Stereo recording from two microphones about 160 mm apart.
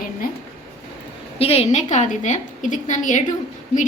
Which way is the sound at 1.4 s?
40° left (ahead or behind).